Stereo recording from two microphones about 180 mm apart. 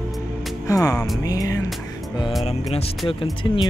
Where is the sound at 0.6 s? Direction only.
20° left (ahead or behind).